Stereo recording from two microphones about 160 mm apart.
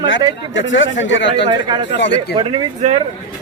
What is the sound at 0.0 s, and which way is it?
Speech, 25° right (ahead or behind).